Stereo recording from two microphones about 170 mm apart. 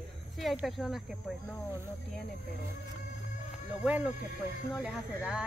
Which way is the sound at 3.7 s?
10° right (ahead or behind).